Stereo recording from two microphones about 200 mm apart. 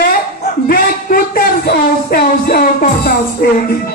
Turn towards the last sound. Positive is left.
turn(degrees=45)  # may be behind; listen again after turning